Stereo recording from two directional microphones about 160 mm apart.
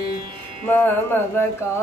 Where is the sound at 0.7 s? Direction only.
10° left (ahead or behind).